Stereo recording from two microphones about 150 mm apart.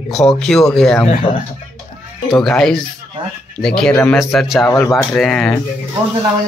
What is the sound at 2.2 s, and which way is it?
Speech, 5° left (ahead or behind).